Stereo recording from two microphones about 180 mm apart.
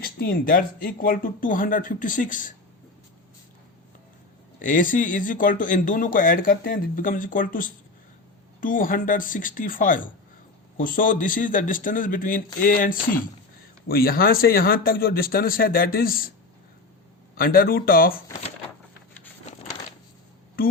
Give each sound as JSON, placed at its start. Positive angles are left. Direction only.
{"t": 0.0, "sound": "speech", "side_deg": 55}
{"t": 4.6, "sound": "speech", "side_deg": 45}
{"t": 17.3, "sound": "speech", "side_deg": 55}
{"t": 20.6, "sound": "a sound", "side_deg": 55}